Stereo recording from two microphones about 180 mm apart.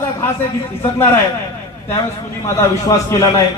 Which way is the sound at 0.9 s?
15° left (ahead or behind).